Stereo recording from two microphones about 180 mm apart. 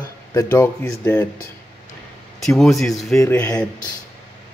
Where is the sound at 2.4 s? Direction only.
Centre (ahead or behind).